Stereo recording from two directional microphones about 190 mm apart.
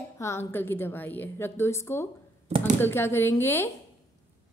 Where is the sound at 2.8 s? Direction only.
10° left (ahead or behind).